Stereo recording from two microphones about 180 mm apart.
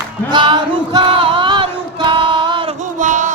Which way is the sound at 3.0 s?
45° right (ahead or behind).